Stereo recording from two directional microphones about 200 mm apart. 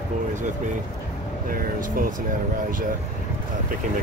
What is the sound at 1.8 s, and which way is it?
Speech, 40° right (ahead or behind).